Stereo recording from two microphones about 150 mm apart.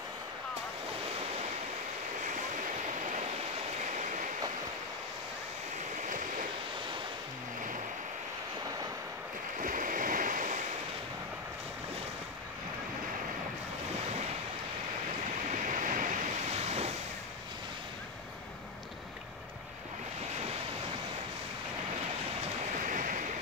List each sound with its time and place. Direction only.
9.6 s waves: 65° right (ahead or behind)
15.5 s waves: 55° right (ahead or behind)
22.8 s waves: 60° right (ahead or behind)